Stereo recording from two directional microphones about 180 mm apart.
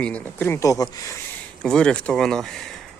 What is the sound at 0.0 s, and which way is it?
Speech, 10° left (ahead or behind).